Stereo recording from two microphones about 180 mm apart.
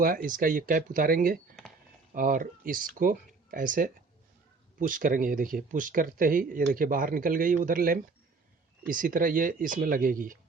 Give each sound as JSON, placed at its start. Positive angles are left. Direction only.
{"t": 0.0, "sound": "speech", "side_deg": -55}